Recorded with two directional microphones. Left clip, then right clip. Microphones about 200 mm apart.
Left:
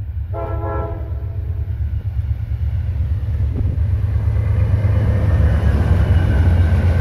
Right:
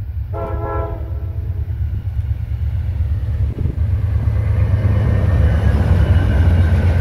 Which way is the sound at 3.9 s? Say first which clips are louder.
Right 1 dB; centre (ahead or behind).